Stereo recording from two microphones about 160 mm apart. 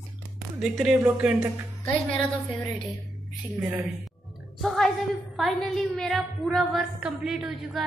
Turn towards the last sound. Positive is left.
turn(degrees=0)  # may be behind; listen again after turning